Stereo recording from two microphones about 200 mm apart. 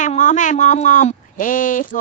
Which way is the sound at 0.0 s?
40° left (ahead or behind).